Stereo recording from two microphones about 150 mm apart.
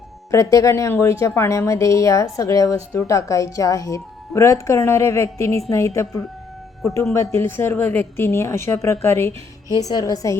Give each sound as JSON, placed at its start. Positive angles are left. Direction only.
{"t": 0.3, "sound": "a woman's voice", "side_deg": 20}
{"t": 9.6, "sound": "a woman's voice", "side_deg": -20}
{"t": 9.9, "sound": "a woman's voice", "side_deg": 25}